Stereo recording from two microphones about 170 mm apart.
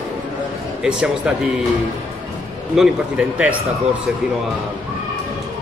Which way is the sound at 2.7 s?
5° right (ahead or behind).